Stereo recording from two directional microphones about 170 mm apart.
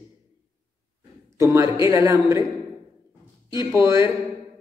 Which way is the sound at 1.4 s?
20° right (ahead or behind).